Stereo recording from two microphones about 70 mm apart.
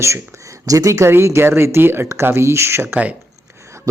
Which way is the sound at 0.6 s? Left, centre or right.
Right.